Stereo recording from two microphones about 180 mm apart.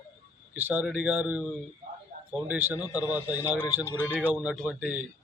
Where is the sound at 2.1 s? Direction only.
40° right (ahead or behind).